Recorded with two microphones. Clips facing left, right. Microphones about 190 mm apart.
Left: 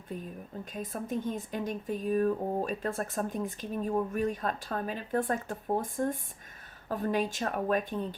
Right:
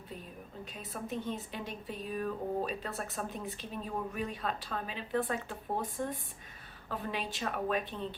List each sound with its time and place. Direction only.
0.6 s a woman's voice: 45° left (ahead or behind)